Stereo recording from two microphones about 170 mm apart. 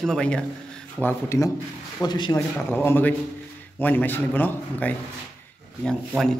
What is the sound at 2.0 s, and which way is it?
Speech, 25° left (ahead or behind).